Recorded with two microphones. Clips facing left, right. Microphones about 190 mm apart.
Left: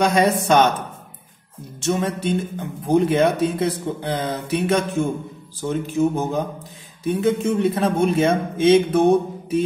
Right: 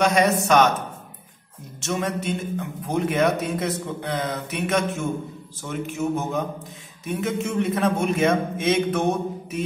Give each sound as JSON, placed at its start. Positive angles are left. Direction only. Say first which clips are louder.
{"t": 0.0, "sound": "speech", "louder": "left 2 dB", "side_deg": 30}
{"t": 1.8, "sound": "speech", "louder": "left 4 dB", "side_deg": 30}